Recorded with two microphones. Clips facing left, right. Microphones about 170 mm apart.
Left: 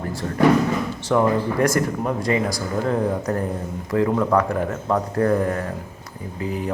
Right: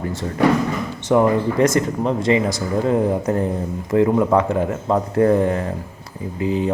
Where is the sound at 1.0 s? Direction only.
20° right (ahead or behind).